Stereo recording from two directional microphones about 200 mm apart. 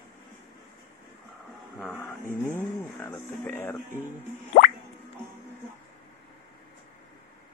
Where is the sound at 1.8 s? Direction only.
10° left (ahead or behind).